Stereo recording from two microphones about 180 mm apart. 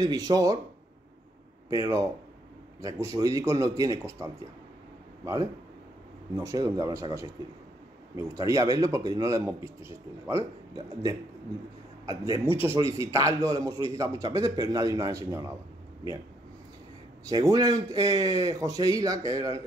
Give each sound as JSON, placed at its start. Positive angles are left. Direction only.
{"t": 0.0, "sound": "a man's voice", "side_deg": -20}
{"t": 1.7, "sound": "a man's voice", "side_deg": -20}
{"t": 17.2, "sound": "a man's voice", "side_deg": -20}